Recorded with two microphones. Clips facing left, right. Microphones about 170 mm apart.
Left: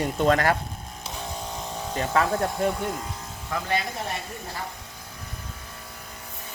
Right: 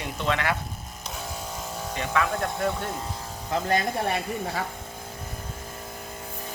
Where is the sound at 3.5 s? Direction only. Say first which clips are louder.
Right 3 dB; 25° right (ahead or behind).